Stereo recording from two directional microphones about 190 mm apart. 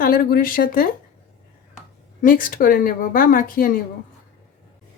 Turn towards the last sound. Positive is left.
turn(degrees=45)  # may be behind; listen again after turning